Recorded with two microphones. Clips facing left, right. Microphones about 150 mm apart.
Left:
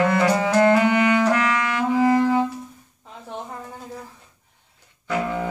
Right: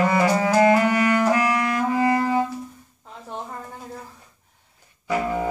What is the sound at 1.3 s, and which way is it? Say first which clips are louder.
Clarinet: right 1 dB; 90° left.